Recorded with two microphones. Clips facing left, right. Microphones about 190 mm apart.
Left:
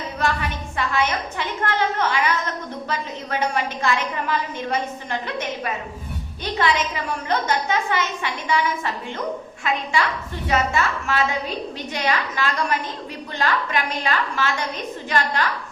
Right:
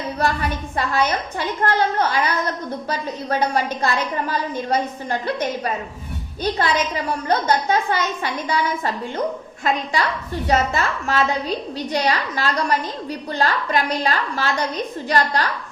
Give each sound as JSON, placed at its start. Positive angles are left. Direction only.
{"t": 0.8, "sound": "a woman's voice", "side_deg": -40}